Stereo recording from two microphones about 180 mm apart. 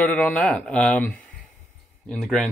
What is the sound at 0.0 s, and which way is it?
Speech, 5° left (ahead or behind).